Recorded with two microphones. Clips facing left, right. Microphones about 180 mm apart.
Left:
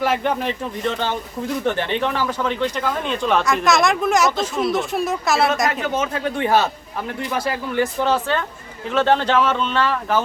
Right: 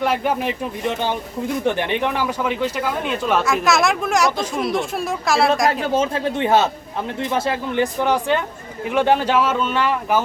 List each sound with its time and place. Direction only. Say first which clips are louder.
0.0 s speech: even; centre (ahead or behind)
0.3 s speech: right 1 dB; 15° right (ahead or behind)
5.9 s speech: right 3 dB; 30° right (ahead or behind); by 10.2 s 15° right (ahead or behind)